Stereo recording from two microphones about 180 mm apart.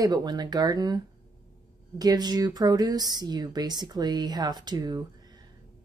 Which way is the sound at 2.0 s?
20° right (ahead or behind).